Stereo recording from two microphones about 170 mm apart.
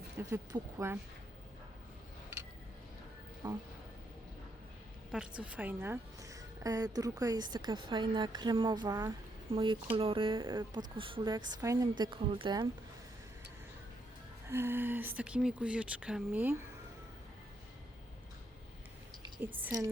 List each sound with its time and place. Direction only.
0.3 s speech: 15° right (ahead or behind)
3.4 s a woman's voice: 25° right (ahead or behind)
5.1 s a woman's voice: 5° right (ahead or behind); by 12.6 s 30° right (ahead or behind)
14.5 s speech: 15° right (ahead or behind)